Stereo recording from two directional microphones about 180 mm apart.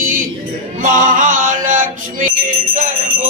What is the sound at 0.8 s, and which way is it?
Male singing, 45° right (ahead or behind).